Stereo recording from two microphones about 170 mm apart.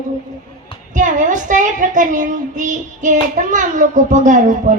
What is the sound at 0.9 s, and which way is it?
A child's voice, 50° right (ahead or behind).